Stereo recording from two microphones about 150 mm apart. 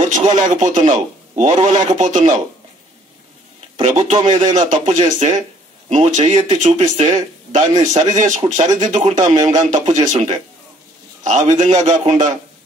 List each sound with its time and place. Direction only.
0.1 s a man's voice: 55° right (ahead or behind)
3.7 s a man's voice: 50° right (ahead or behind)